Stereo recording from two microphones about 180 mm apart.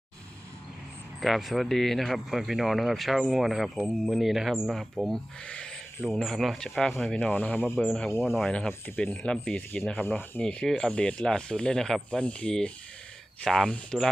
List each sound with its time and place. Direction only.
1.2 s speech: centre (ahead or behind)